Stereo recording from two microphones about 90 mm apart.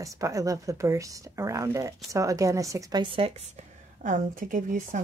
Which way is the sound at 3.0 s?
80° right.